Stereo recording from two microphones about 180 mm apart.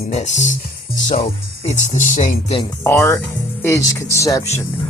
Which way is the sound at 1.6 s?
40° left (ahead or behind).